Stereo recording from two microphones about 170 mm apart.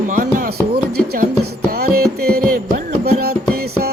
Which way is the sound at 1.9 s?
65° right (ahead or behind).